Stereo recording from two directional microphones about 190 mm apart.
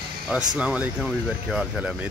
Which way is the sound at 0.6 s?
5° right (ahead or behind).